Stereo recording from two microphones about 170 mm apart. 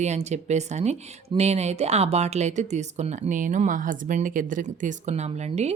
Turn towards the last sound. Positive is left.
turn(degrees=-40)  # may be behind; listen again after turning